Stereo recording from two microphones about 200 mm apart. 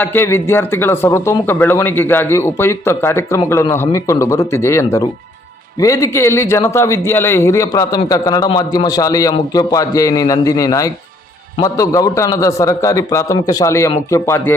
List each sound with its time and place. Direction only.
0.0 s a man's voice: 10° left (ahead or behind)